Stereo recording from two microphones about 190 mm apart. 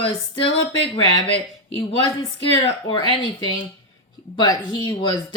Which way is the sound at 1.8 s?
30° left (ahead or behind).